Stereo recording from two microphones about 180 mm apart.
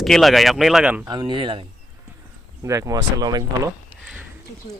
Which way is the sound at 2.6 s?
15° right (ahead or behind).